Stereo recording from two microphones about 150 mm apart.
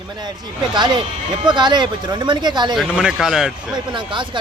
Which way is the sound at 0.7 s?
30° right (ahead or behind).